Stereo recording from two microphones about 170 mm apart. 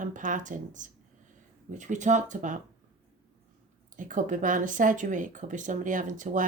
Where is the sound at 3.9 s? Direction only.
50° right (ahead or behind).